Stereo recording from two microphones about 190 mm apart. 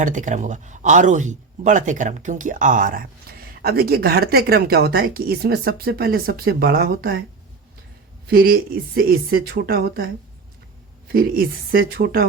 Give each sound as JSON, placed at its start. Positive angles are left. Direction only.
{"t": 0.0, "sound": "speech", "side_deg": -40}
{"t": 8.3, "sound": "speech", "side_deg": -50}
{"t": 11.1, "sound": "speech", "side_deg": -50}